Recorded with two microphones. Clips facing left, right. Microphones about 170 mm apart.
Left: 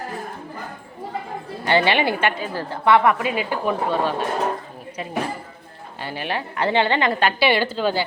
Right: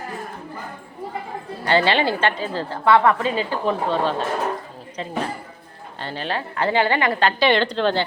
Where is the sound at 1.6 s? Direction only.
15° left (ahead or behind).